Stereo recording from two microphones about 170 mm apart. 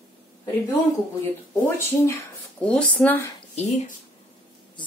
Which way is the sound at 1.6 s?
15° left (ahead or behind).